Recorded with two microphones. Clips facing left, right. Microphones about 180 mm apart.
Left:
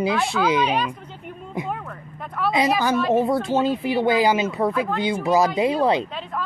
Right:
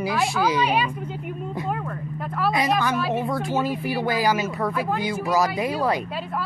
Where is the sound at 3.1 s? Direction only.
30° left (ahead or behind).